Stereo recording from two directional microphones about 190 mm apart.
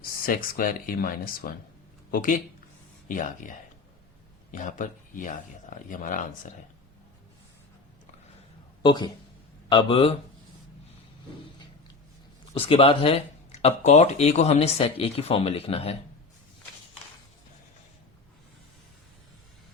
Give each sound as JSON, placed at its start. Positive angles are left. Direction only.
{"t": 0.0, "sound": "speech", "side_deg": 50}
{"t": 4.5, "sound": "speech", "side_deg": 45}
{"t": 8.8, "sound": "speech", "side_deg": 25}
{"t": 12.5, "sound": "speech", "side_deg": 30}